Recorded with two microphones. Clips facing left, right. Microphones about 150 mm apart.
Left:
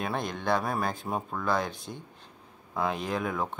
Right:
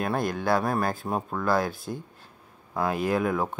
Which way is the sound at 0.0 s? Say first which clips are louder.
Right 4 dB; 5° right (ahead or behind).